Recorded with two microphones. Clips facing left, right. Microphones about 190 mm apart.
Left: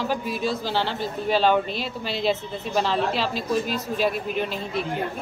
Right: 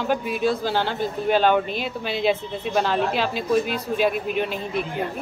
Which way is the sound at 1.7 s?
50° right (ahead or behind).